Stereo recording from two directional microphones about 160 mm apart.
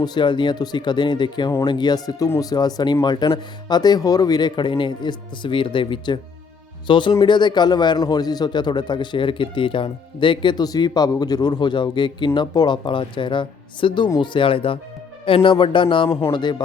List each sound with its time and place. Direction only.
0.0 s a man's voice: 30° left (ahead or behind)